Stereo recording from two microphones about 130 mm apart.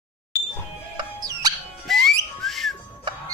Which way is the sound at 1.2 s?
30° right (ahead or behind).